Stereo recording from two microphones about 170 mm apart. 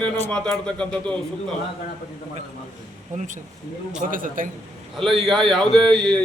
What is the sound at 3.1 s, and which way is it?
A man's voice, 45° right (ahead or behind).